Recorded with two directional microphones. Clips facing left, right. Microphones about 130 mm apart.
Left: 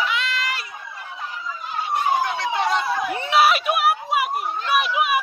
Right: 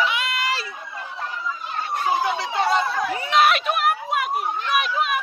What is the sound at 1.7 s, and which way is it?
Chatter, 10° left (ahead or behind).